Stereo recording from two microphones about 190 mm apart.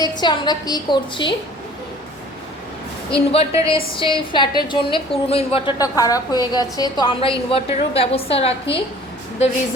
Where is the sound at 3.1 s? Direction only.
30° left (ahead or behind).